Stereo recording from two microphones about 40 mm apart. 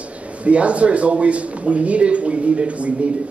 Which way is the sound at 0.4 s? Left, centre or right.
Right.